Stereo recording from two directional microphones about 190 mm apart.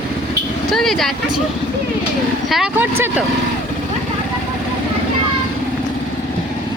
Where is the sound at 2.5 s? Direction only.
5° right (ahead or behind).